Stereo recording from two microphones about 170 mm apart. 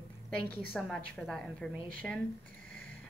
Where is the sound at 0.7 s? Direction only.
Centre (ahead or behind).